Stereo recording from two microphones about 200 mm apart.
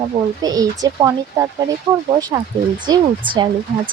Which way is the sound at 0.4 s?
20° right (ahead or behind).